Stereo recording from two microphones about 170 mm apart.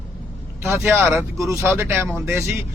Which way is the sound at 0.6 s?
15° right (ahead or behind).